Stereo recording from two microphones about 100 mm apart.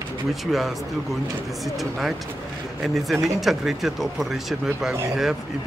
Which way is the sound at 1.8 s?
Centre (ahead or behind).